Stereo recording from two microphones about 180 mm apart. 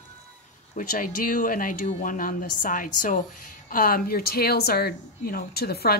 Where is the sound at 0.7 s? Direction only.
45° left (ahead or behind).